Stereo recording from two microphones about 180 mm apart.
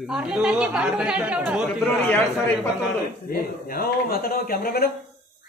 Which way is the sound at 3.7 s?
55° left (ahead or behind).